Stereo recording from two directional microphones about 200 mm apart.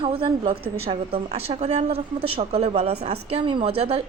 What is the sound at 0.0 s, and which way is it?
Speech, 25° right (ahead or behind).